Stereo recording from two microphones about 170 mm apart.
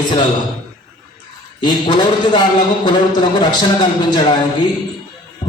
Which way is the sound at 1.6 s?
25° left (ahead or behind).